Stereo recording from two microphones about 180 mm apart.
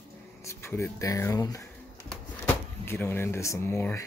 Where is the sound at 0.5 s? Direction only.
15° left (ahead or behind).